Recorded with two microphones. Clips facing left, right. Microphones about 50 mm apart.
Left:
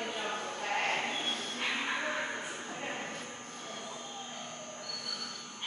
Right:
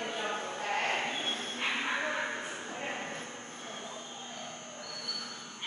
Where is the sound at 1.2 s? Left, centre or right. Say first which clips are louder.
Right 1 dB; right.